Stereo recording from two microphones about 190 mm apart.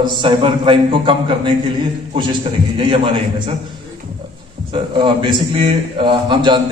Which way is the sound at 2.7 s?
25° right (ahead or behind).